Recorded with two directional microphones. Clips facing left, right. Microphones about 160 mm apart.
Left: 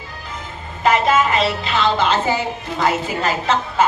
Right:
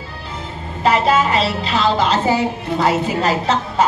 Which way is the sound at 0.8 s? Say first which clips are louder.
Right 1 dB; 30° right (ahead or behind).